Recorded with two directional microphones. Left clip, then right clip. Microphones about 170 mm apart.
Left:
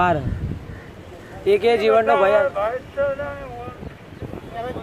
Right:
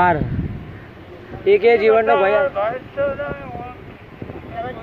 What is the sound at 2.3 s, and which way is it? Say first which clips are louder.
Speech: right 1 dB; 40° left (ahead or behind).